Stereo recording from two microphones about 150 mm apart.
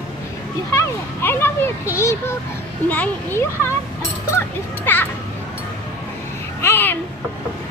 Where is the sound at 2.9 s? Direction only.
10° left (ahead or behind).